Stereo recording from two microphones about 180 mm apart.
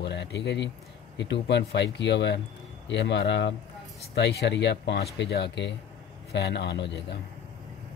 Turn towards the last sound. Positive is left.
turn(degrees=70)  # may be behind; listen again after turning